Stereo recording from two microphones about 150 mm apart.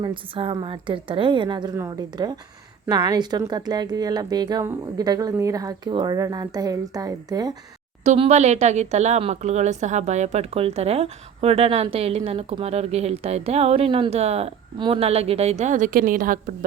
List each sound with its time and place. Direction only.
0.0 s a woman's voice: 35° right (ahead or behind)
8.0 s speech: 45° right (ahead or behind); by 16.6 s 65° right (ahead or behind)